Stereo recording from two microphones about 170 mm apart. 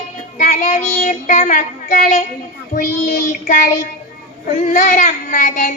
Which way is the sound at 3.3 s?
50° left (ahead or behind).